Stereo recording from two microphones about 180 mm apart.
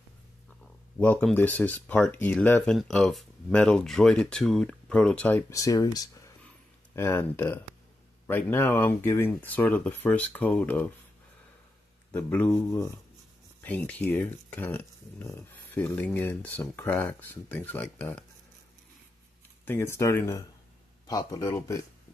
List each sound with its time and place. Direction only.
0.9 s speech: 5° left (ahead or behind)
12.1 s speech: 10° left (ahead or behind)
19.6 s speech: 15° left (ahead or behind)